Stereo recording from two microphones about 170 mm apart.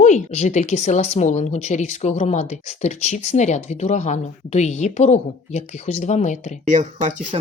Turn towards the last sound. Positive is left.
turn(degrees=-45)  # may be behind; listen again after turning